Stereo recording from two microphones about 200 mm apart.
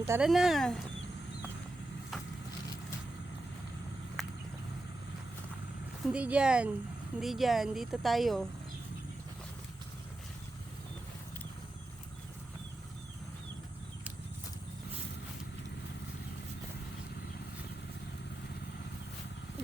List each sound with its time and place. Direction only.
0.0 s a woman's voice: 5° right (ahead or behind)
4.2 s a sound: centre (ahead or behind)
6.1 s a woman's voice: 5° right (ahead or behind)